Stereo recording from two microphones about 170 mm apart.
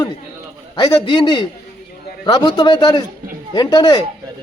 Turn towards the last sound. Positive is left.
turn(degrees=25)  # may be behind; listen again after turning